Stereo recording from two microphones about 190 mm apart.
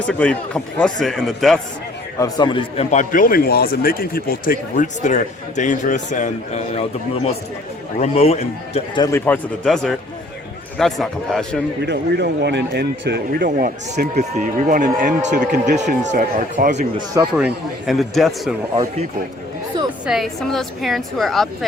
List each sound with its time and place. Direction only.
0.1 s a man's voice: 5° left (ahead or behind)
2.1 s a man's voice: 20° left (ahead or behind)
2.9 s a man's voice: 45° left (ahead or behind)
7.9 s a man's voice: 35° left (ahead or behind)
9.0 s a man's voice: 15° left (ahead or behind)
11.9 s speech: 60° right (ahead or behind); by 16.8 s 45° right (ahead or behind)
17.3 s a man's voice: 5° right (ahead or behind)
20.1 s a man's voice: centre (ahead or behind)